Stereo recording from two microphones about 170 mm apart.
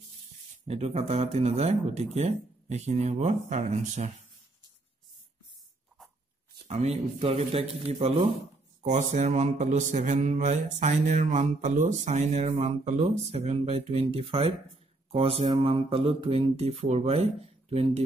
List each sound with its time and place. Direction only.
0.7 s speech: 40° right (ahead or behind)
2.1 s mantra: 40° right (ahead or behind)
6.7 s speech: 40° right (ahead or behind)
8.8 s mantra: 45° right (ahead or behind)
15.0 s speech: 35° right (ahead or behind)